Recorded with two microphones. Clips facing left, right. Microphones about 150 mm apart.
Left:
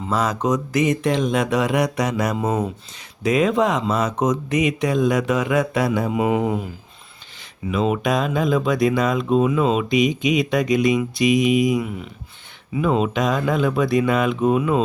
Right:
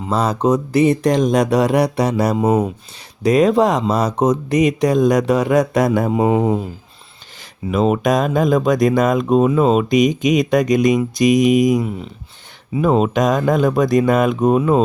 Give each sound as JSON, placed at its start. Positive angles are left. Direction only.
{"t": 0.1, "sound": "speech", "side_deg": -30}
{"t": 2.5, "sound": "speech", "side_deg": -15}
{"t": 3.2, "sound": "speech", "side_deg": -35}
{"t": 7.7, "sound": "speech", "side_deg": -45}